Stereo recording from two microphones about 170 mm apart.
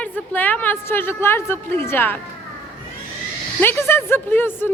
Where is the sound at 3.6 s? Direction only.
15° left (ahead or behind).